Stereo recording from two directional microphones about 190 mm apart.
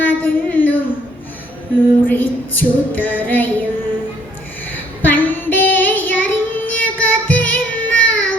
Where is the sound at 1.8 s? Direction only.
10° left (ahead or behind).